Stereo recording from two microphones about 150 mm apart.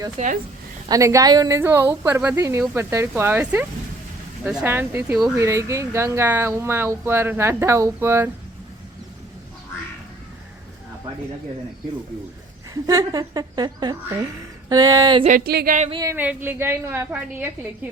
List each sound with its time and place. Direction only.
0.9 s a woman's voice: 20° right (ahead or behind)
12.7 s a woman's voice: 25° right (ahead or behind)
15.3 s a sound: 80° right
16.0 s speech: 10° right (ahead or behind)